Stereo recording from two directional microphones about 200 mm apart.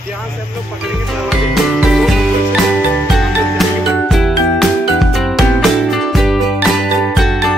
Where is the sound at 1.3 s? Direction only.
Centre (ahead or behind).